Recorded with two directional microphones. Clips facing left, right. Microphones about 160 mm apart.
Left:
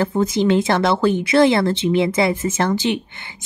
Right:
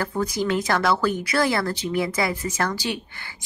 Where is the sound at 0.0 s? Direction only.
25° left (ahead or behind).